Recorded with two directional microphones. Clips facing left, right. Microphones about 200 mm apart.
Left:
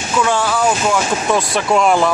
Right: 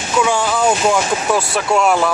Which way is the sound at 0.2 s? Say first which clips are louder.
Even; 15° right (ahead or behind).